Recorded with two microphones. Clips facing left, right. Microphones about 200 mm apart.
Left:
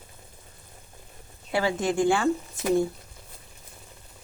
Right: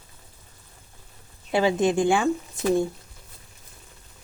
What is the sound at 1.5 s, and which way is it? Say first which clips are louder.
Speech: right 4 dB; 20° right (ahead or behind).